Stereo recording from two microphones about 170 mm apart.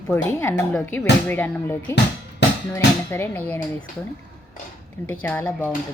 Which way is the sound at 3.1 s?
10° left (ahead or behind).